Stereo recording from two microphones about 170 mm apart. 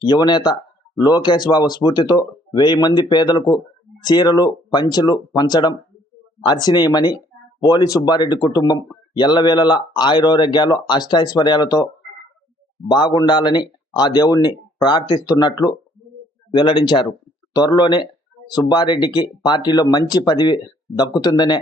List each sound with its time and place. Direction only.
0.0 s speech: 25° left (ahead or behind)
12.9 s speech: 25° left (ahead or behind)